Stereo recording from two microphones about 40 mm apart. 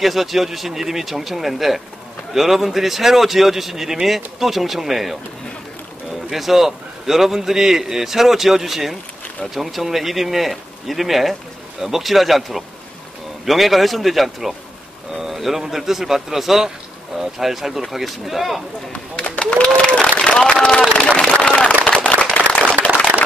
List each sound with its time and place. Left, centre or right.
0.0 s speech: centre
6.3 s a man's voice: centre
19.1 s a sound: left
20.2 s speech: left
21.4 s a sound: left
21.8 s firecracker: left